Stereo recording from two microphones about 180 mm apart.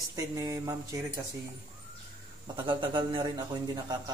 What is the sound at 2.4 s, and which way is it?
A man's voice, 25° right (ahead or behind).